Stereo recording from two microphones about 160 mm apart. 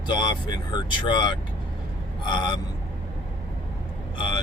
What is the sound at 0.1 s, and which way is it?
Speech, 25° left (ahead or behind).